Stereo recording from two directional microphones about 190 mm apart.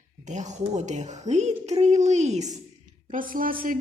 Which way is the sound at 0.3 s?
40° right (ahead or behind).